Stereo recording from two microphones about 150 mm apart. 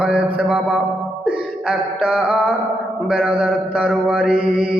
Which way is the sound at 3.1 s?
5° right (ahead or behind).